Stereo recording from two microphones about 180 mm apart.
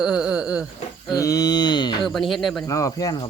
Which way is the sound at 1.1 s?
20° left (ahead or behind).